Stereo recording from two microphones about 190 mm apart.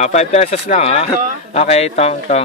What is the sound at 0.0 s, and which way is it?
Speech, 35° left (ahead or behind).